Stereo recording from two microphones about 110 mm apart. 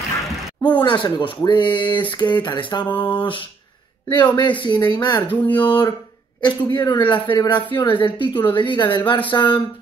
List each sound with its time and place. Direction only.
0.6 s speech: 45° left (ahead or behind)